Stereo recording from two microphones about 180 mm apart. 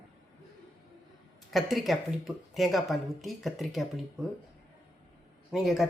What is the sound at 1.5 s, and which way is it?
Speech, centre (ahead or behind).